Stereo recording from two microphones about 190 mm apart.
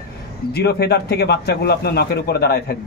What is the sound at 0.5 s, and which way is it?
Speech, 55° left (ahead or behind).